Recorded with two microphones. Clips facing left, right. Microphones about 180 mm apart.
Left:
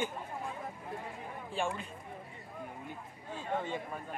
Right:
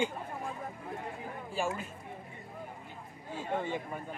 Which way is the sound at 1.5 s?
5° right (ahead or behind).